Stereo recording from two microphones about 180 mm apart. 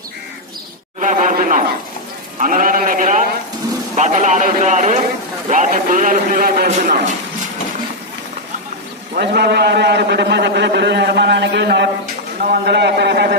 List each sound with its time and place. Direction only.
0.9 s a man's voice: 45° right (ahead or behind)
9.1 s a man's voice: 65° right (ahead or behind)
12.4 s a man's voice: 60° right (ahead or behind)